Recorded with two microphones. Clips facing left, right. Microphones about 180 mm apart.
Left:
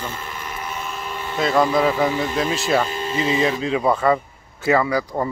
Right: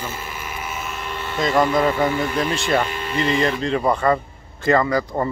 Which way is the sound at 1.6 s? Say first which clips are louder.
Even; centre (ahead or behind).